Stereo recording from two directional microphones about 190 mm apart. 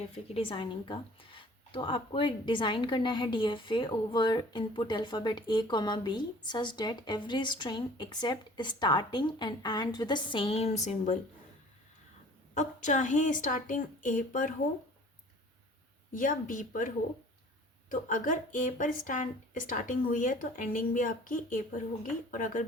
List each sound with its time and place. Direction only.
0.3 s speech: 25° left (ahead or behind)
12.5 s speech: 40° left (ahead or behind)
16.1 s speech: 45° left (ahead or behind)